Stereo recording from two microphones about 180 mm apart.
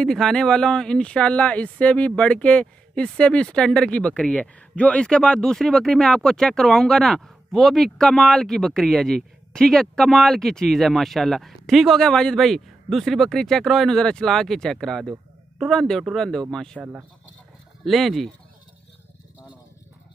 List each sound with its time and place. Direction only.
0.0 s speech: 5° left (ahead or behind)